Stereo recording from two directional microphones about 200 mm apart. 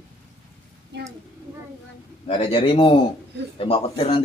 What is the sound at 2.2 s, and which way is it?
Speech, 30° left (ahead or behind).